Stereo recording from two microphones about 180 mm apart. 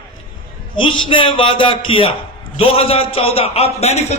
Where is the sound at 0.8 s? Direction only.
25° left (ahead or behind).